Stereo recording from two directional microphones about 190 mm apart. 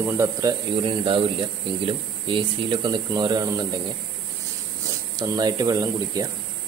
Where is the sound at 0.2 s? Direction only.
20° right (ahead or behind).